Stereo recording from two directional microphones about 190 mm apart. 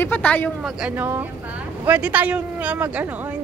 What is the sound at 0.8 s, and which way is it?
Speech, 10° right (ahead or behind).